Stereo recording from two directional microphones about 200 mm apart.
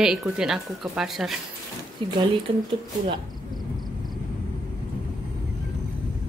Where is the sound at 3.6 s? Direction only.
Centre (ahead or behind).